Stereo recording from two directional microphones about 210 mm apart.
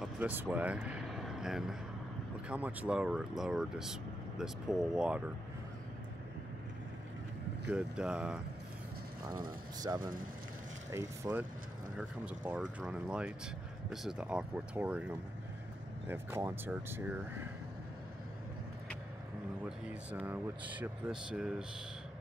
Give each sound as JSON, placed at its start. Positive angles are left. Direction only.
{"t": 0.0, "sound": "speech", "side_deg": -10}
{"t": 7.7, "sound": "speech", "side_deg": -5}
{"t": 9.3, "sound": "speech", "side_deg": -20}
{"t": 16.1, "sound": "speech", "side_deg": -10}
{"t": 19.9, "sound": "speech", "side_deg": -5}